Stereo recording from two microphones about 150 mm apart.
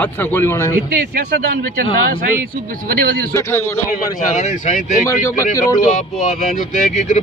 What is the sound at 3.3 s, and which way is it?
Speech, 15° left (ahead or behind).